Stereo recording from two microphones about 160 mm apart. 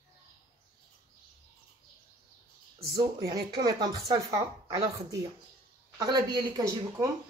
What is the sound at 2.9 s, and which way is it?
Speech, 25° right (ahead or behind).